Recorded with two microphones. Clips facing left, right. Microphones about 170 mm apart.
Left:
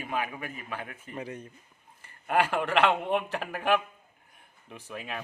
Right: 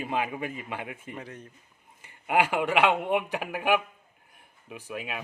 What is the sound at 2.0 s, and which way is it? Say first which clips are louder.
Speech: right 1 dB; 15° right (ahead or behind).